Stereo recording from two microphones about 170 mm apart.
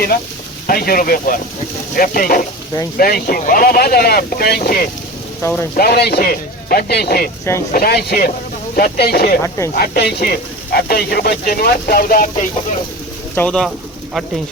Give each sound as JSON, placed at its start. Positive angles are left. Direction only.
{"t": 0.7, "sound": "speech", "side_deg": 60}
{"t": 5.4, "sound": "speech", "side_deg": 15}
{"t": 5.7, "sound": "speech", "side_deg": 65}
{"t": 13.3, "sound": "speech", "side_deg": 5}